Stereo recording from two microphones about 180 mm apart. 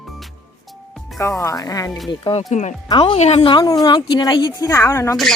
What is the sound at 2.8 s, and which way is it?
A woman's voice, 25° left (ahead or behind).